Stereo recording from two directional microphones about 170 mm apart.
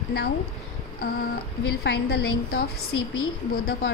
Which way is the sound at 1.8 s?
70° left (ahead or behind).